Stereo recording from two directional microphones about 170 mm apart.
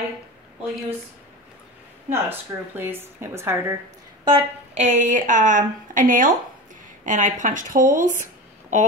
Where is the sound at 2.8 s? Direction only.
15° right (ahead or behind).